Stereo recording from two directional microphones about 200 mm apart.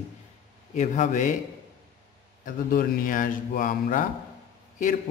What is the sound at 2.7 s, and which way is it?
Speech, 40° left (ahead or behind).